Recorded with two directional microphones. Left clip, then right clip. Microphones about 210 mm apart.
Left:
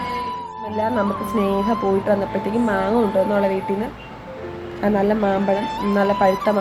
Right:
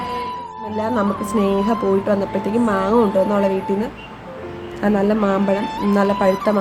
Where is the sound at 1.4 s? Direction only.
15° right (ahead or behind).